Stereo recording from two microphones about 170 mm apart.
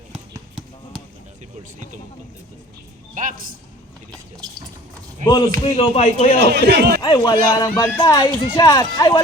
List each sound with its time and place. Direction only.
3.2 s a man's voice: 50° right (ahead or behind)
5.2 s speech: 25° left (ahead or behind)
5.7 s speech: 40° left (ahead or behind)
6.5 s speech: 75° right (ahead or behind)
7.0 s speech: 25° left (ahead or behind)